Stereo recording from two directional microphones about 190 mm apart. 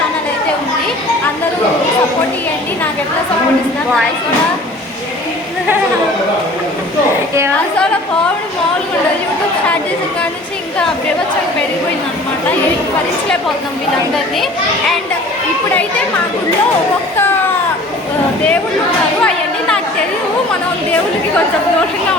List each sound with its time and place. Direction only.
19.2 s chatter: 5° left (ahead or behind)